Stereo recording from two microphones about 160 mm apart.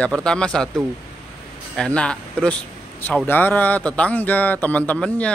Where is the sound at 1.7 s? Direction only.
5° left (ahead or behind).